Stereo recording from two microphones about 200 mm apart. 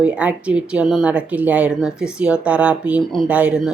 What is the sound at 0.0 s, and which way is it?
A woman's voice, 5° right (ahead or behind).